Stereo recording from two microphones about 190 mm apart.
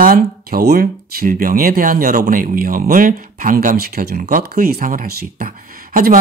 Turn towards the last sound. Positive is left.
turn(degrees=-45)  # may be behind; listen again after turning